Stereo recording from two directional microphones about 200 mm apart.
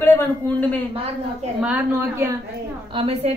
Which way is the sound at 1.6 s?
10° right (ahead or behind).